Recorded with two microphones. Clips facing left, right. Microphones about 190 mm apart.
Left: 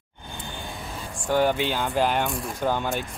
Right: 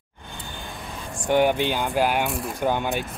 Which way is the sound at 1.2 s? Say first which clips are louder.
Right 2 dB; 15° right (ahead or behind).